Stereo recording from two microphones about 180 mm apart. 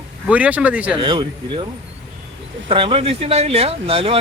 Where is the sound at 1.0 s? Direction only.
25° right (ahead or behind).